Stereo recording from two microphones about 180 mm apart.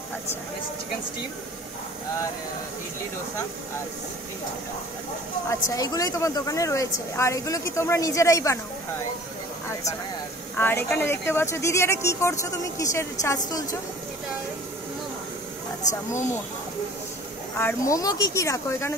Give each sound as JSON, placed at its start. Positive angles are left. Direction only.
{"t": 5.5, "sound": "speech", "side_deg": 20}
{"t": 10.6, "sound": "a woman's voice", "side_deg": 10}
{"t": 15.9, "sound": "speech", "side_deg": 15}
{"t": 17.6, "sound": "speech", "side_deg": 15}